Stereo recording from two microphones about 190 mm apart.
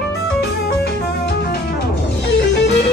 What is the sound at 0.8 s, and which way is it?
Music, 60° left (ahead or behind).